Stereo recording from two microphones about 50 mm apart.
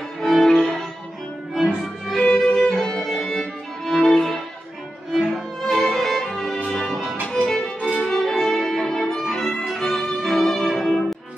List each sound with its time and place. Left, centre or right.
0.2 s violin: centre
2.1 s violin: centre
2.5 s music: centre
5.3 s violin: centre
6.7 s music: centre
8.0 s violin: centre